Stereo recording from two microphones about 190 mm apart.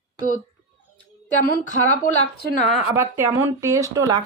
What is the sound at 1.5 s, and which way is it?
Speech, 40° left (ahead or behind).